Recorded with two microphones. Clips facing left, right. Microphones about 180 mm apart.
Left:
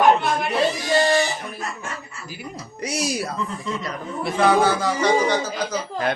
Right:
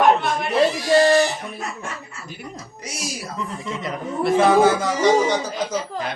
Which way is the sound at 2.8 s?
65° left (ahead or behind).